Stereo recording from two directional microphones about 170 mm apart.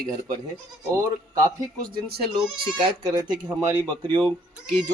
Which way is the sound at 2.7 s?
25° right (ahead or behind).